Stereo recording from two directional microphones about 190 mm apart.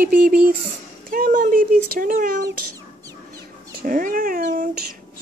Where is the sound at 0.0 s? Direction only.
50° right (ahead or behind).